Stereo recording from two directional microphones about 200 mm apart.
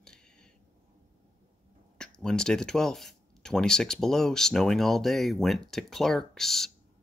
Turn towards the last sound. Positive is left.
turn(degrees=0)  # may be behind; listen again after turning